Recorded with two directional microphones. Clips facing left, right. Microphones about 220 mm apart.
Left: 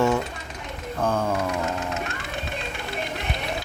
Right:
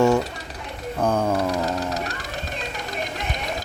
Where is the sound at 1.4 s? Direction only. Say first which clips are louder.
Right 3 dB; 35° right (ahead or behind).